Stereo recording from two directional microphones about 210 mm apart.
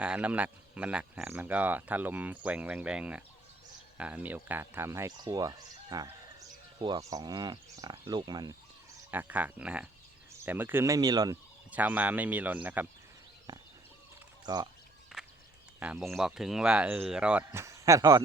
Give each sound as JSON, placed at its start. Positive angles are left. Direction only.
{"t": 0.0, "sound": "speech", "side_deg": -5}
{"t": 9.0, "sound": "speech", "side_deg": -10}
{"t": 11.7, "sound": "speech", "side_deg": -10}
{"t": 13.5, "sound": "bird", "side_deg": -20}
{"t": 14.4, "sound": "speech", "side_deg": -20}
{"t": 15.1, "sound": "walk", "side_deg": 0}
{"t": 15.8, "sound": "speech", "side_deg": -5}